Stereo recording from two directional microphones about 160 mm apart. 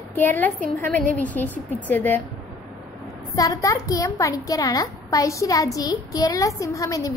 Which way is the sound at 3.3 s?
20° left (ahead or behind).